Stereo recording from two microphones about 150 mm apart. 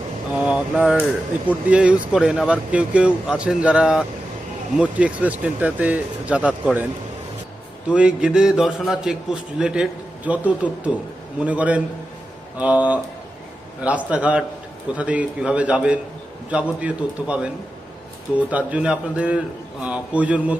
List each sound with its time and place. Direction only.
0.3 s speech: 5° right (ahead or behind)
7.9 s a man's voice: 5° right (ahead or behind)